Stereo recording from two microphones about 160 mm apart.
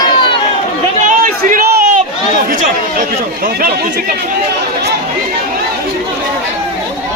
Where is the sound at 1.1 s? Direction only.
55° right (ahead or behind).